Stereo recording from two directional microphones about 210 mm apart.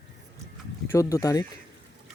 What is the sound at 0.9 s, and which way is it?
Speech, 15° left (ahead or behind).